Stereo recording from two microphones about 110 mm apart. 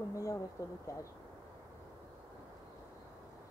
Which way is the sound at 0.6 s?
30° left (ahead or behind).